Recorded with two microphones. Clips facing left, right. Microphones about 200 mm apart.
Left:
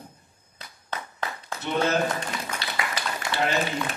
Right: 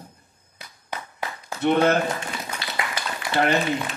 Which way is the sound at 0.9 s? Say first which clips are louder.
Right 1 dB; 10° right (ahead or behind).